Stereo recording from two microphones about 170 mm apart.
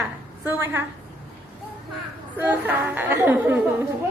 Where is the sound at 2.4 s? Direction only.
10° right (ahead or behind).